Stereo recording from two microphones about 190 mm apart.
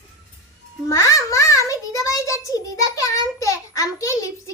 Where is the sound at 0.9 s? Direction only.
15° left (ahead or behind).